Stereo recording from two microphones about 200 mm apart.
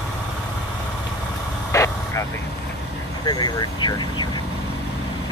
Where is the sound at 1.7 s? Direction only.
15° left (ahead or behind).